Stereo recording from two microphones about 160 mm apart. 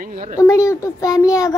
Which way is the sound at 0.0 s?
50° right (ahead or behind).